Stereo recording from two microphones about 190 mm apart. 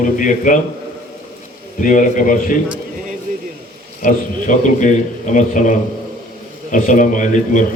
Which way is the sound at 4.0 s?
40° left (ahead or behind).